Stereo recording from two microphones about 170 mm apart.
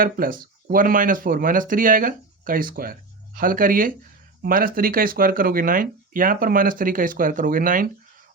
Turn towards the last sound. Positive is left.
turn(degrees=-55)  # may be behind; listen again after turning